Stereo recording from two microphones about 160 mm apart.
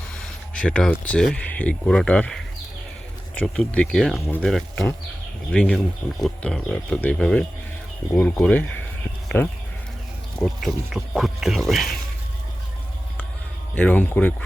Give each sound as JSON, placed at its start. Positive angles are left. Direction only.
{"t": 0.5, "sound": "speech", "side_deg": 5}
{"t": 10.4, "sound": "speech", "side_deg": 0}
{"t": 13.7, "sound": "speech", "side_deg": 10}